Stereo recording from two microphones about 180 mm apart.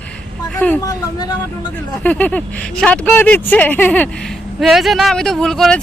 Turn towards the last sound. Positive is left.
turn(degrees=0)  # may be behind; listen again after turning